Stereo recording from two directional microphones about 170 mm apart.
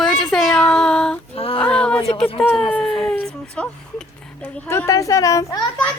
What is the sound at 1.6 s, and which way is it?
A woman's voice, 5° left (ahead or behind).